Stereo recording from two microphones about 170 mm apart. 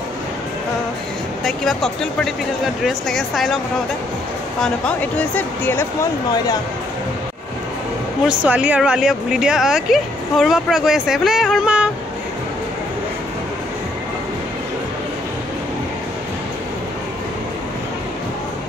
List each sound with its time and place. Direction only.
1.4 s speech: centre (ahead or behind)
4.6 s speech: 5° left (ahead or behind)
6.3 s speech: 25° left (ahead or behind)
8.3 s speech: 5° right (ahead or behind)